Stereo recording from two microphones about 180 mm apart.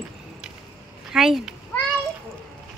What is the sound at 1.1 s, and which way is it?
Speech, centre (ahead or behind).